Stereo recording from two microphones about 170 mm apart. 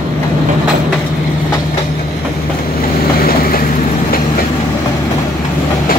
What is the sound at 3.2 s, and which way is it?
Vehicle, 60° left (ahead or behind).